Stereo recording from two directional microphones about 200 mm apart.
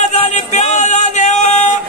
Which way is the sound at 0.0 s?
35° left (ahead or behind).